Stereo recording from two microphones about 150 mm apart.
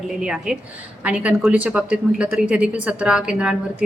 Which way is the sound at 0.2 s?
5° right (ahead or behind).